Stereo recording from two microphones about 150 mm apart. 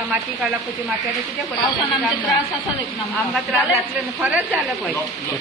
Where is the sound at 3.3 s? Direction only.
Centre (ahead or behind).